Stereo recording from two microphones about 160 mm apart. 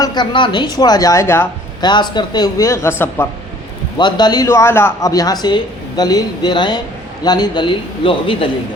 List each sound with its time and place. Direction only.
0.0 s speech: 25° left (ahead or behind)
1.8 s speech: 25° left (ahead or behind)
3.9 s a man's voice: 30° left (ahead or behind)